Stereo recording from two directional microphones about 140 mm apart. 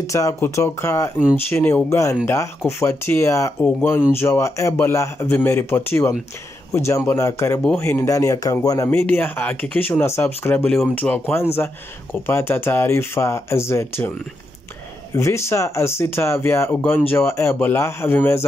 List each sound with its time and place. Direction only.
0.0 s speech: 20° left (ahead or behind)
9.0 s speech: 15° left (ahead or behind)
15.1 s speech: 20° left (ahead or behind)